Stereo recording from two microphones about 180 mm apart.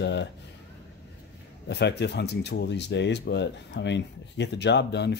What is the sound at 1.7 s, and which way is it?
Speech, 70° left (ahead or behind).